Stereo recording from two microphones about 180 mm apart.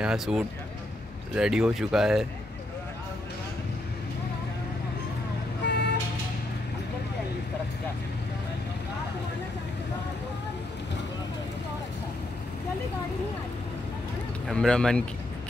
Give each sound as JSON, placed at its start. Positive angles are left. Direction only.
{"t": 0.0, "sound": "speech", "side_deg": -5}
{"t": 5.7, "sound": "vehicle", "side_deg": 70}
{"t": 14.5, "sound": "speech", "side_deg": 5}